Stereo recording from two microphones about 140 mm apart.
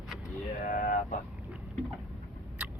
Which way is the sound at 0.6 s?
75° left (ahead or behind).